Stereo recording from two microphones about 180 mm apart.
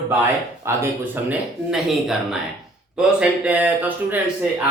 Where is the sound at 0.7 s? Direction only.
15° right (ahead or behind).